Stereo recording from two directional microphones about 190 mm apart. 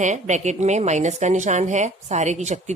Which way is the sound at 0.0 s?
40° right (ahead or behind).